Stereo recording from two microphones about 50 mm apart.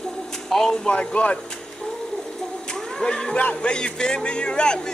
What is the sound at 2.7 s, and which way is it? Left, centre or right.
A man's voice, centre.